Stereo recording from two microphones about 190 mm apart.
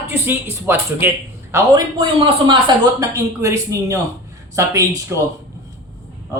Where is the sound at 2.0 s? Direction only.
25° right (ahead or behind).